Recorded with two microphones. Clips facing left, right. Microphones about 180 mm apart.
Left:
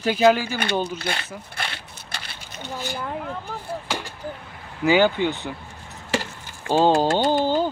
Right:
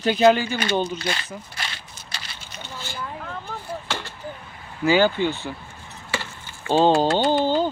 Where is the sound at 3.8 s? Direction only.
10° left (ahead or behind).